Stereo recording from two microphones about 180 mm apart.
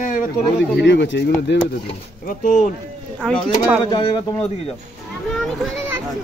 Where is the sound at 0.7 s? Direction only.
80° left.